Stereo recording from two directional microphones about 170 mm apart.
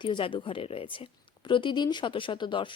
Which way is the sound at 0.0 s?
30° left (ahead or behind).